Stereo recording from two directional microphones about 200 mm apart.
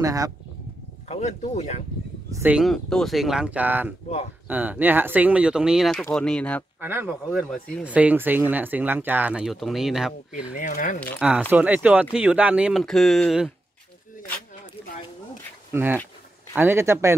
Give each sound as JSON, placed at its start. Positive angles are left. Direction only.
{"t": 0.0, "sound": "speech", "side_deg": -15}
{"t": 1.0, "sound": "speech", "side_deg": 35}
{"t": 2.3, "sound": "speech", "side_deg": -5}
{"t": 6.8, "sound": "speech", "side_deg": -10}
{"t": 7.3, "sound": "speech", "side_deg": 0}
{"t": 10.6, "sound": "speech", "side_deg": 40}
{"t": 11.1, "sound": "speech", "side_deg": -5}
{"t": 15.7, "sound": "speech", "side_deg": -10}